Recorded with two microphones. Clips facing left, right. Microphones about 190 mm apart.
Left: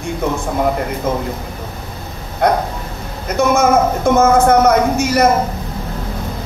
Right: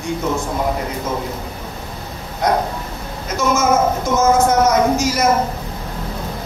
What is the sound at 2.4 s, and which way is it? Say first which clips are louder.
Speech: left 3 dB; 60° left (ahead or behind).